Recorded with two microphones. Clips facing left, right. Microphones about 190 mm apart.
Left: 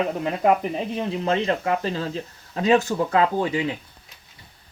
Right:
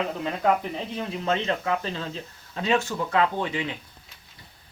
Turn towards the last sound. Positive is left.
turn(degrees=30)  # may be behind; listen again after turning